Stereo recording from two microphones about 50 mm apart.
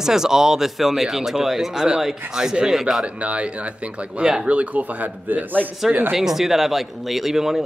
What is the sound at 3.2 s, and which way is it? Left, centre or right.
Speech, right.